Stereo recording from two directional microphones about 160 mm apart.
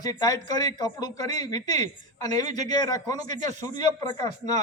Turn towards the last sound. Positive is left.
turn(degrees=25)  # may be behind; listen again after turning